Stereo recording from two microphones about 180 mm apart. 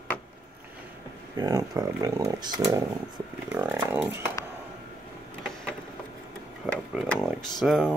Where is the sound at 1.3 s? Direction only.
20° right (ahead or behind).